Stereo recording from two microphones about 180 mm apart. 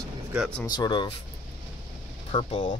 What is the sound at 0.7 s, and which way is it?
Speech, 25° left (ahead or behind).